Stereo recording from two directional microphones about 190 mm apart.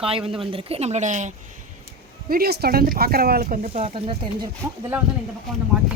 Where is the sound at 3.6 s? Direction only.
30° right (ahead or behind).